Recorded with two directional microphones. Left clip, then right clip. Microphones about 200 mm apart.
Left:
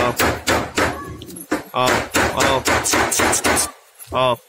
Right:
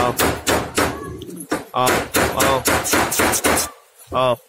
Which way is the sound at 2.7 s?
50° right (ahead or behind).